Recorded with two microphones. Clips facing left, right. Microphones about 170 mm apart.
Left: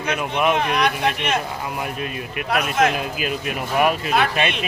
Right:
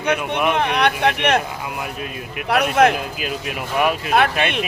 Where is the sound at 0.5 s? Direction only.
65° right (ahead or behind).